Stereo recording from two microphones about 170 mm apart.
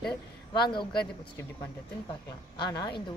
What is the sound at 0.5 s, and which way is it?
Speech, 25° left (ahead or behind).